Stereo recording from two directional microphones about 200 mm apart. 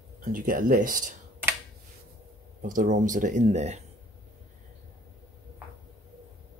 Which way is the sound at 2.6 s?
40° right (ahead or behind).